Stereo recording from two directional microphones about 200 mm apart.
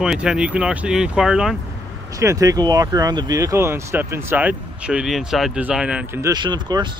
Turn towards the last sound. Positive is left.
turn(degrees=-20)  # may be behind; listen again after turning